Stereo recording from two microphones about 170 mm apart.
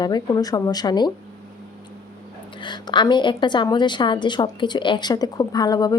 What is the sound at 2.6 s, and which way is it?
Speech, 25° left (ahead or behind).